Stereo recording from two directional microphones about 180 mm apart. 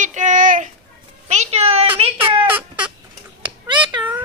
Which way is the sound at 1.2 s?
40° right (ahead or behind).